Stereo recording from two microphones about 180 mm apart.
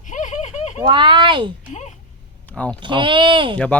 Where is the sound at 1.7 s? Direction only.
40° left (ahead or behind).